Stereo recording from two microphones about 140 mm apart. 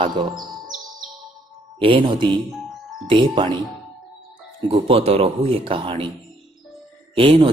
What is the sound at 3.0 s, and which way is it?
Speech, 35° right (ahead or behind).